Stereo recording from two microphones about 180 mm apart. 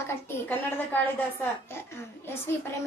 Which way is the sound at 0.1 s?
15° left (ahead or behind).